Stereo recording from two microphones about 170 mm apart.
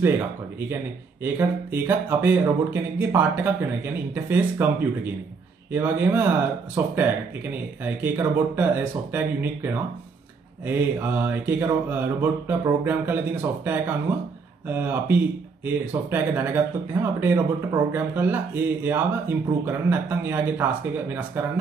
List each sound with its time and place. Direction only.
1.2 s speech: 10° right (ahead or behind)
5.7 s speech: 10° right (ahead or behind)